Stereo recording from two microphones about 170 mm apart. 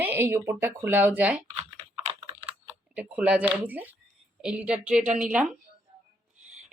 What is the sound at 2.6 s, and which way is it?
Speech, 5° right (ahead or behind).